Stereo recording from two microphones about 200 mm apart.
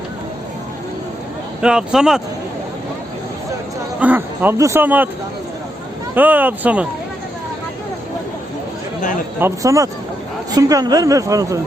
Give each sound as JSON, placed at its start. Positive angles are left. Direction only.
{"t": 1.6, "sound": "speech", "side_deg": -5}
{"t": 4.0, "sound": "speech", "side_deg": -10}
{"t": 6.1, "sound": "speech", "side_deg": -10}
{"t": 9.4, "sound": "speech", "side_deg": -15}